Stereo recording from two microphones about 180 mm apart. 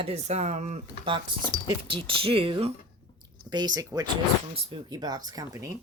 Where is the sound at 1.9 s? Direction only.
30° right (ahead or behind).